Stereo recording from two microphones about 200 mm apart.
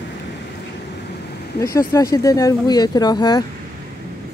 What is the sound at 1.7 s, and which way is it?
Speech, 15° left (ahead or behind).